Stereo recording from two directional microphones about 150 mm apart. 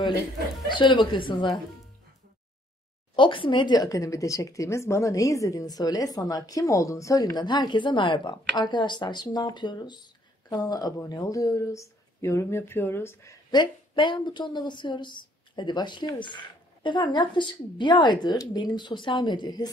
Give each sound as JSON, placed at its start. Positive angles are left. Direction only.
{"t": 0.7, "sound": "a woman's voice", "side_deg": 30}
{"t": 3.2, "sound": "a woman's voice", "side_deg": 35}